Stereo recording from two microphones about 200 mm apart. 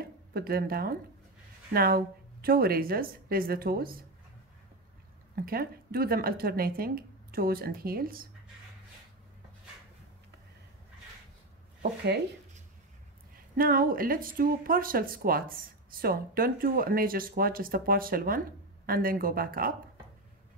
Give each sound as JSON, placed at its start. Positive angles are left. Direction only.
{"t": 0.0, "sound": "speech", "side_deg": -50}
{"t": 5.3, "sound": "speech", "side_deg": -50}
{"t": 13.6, "sound": "speech", "side_deg": -45}